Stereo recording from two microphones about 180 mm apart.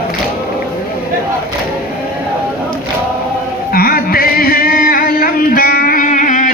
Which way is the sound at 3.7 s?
55° left (ahead or behind).